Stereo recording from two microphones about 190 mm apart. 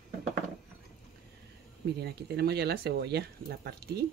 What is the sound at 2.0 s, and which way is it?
Speech, 60° right (ahead or behind).